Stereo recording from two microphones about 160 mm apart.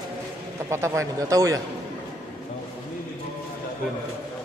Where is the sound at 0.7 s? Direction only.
15° right (ahead or behind).